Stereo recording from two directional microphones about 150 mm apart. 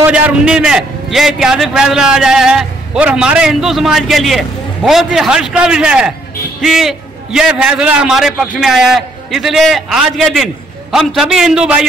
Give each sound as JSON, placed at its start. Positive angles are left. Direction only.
{"t": 0.0, "sound": "a man's voice", "side_deg": -10}